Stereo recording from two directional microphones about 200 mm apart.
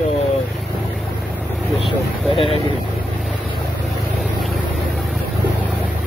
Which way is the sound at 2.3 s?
25° left (ahead or behind).